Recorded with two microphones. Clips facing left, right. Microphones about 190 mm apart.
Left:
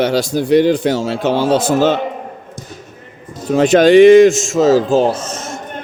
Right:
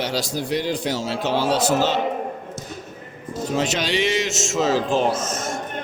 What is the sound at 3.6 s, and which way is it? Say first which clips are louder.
A man's voice: left 17 dB; 50° left (ahead or behind).